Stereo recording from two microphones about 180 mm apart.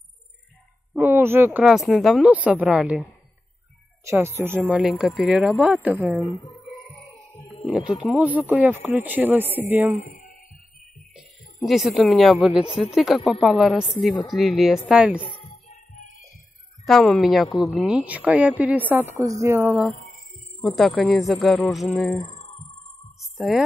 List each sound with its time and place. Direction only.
0.9 s speech: 15° right (ahead or behind)
4.0 s speech: 15° right (ahead or behind)
7.6 s speech: centre (ahead or behind)
9.9 s a sound: 45° left (ahead or behind)
11.1 s speech: centre (ahead or behind)
15.3 s music: 30° left (ahead or behind)
16.8 s speech: 5° left (ahead or behind); by 19.9 s 15° right (ahead or behind)
20.6 s speech: 5° left (ahead or behind)
22.2 s a sound: 35° left (ahead or behind)
23.3 s a woman's voice: centre (ahead or behind)